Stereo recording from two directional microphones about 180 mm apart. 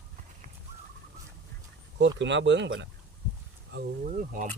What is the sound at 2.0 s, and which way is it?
Speech, 80° right.